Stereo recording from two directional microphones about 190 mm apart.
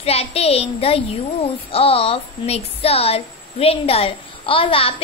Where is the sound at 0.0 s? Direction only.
35° left (ahead or behind).